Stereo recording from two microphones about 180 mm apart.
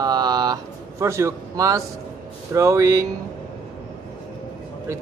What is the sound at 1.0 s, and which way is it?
A man's voice, 15° right (ahead or behind).